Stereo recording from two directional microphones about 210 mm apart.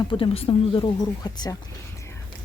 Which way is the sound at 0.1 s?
25° left (ahead or behind).